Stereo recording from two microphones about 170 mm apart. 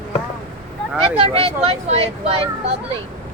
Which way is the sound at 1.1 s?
35° right (ahead or behind).